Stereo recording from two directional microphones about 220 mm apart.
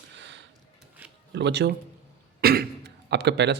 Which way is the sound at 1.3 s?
55° right (ahead or behind).